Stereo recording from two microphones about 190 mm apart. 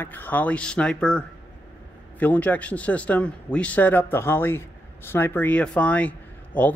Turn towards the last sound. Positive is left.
turn(degrees=10)  # may be behind; listen again after turning